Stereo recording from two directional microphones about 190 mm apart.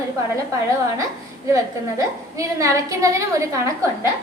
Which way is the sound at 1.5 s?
15° right (ahead or behind).